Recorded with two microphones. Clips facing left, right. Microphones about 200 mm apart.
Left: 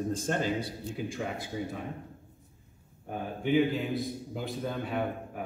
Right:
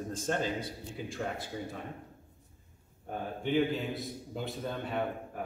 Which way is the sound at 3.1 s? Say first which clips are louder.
Left 4 dB; 5° left (ahead or behind).